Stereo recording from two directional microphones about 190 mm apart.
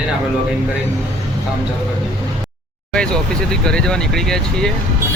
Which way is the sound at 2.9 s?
5° left (ahead or behind).